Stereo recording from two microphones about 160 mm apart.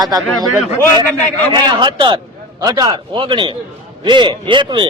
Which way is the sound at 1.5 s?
30° right (ahead or behind).